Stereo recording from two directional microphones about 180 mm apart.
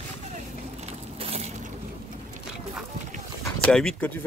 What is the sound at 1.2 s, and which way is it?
Boat, 35° right (ahead or behind).